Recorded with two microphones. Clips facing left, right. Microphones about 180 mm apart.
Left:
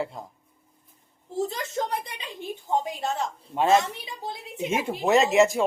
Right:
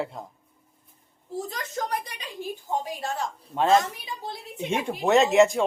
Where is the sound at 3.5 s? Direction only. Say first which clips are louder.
Even; 10° left (ahead or behind).